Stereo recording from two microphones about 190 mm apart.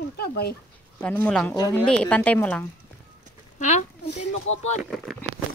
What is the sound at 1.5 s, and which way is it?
Speech, 20° left (ahead or behind).